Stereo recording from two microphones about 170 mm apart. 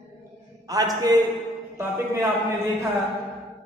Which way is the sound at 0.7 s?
20° right (ahead or behind).